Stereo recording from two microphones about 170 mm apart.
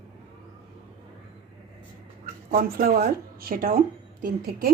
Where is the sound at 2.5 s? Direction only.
60° right (ahead or behind).